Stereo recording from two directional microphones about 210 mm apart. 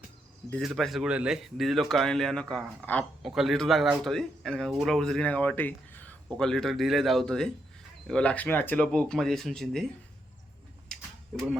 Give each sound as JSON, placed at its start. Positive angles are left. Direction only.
{"t": 0.5, "sound": "speech", "side_deg": 0}
{"t": 10.8, "sound": "camera", "side_deg": 5}